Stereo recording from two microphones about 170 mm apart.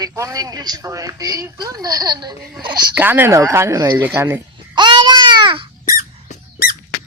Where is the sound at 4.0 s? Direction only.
10° right (ahead or behind).